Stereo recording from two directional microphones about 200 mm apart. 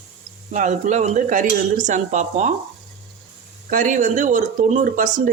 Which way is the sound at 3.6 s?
40° right (ahead or behind).